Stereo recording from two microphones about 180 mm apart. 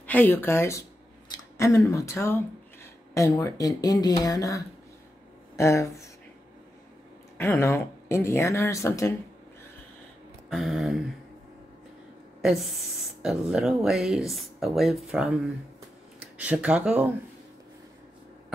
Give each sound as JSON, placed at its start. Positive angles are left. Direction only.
{"t": 0.0, "sound": "speech", "side_deg": 10}
{"t": 7.3, "sound": "speech", "side_deg": 15}
{"t": 10.5, "sound": "speech", "side_deg": 0}
{"t": 12.4, "sound": "speech", "side_deg": -5}